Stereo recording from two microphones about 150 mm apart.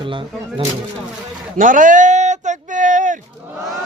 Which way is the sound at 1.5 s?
60° right (ahead or behind).